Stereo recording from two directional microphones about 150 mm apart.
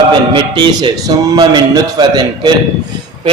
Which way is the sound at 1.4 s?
30° right (ahead or behind).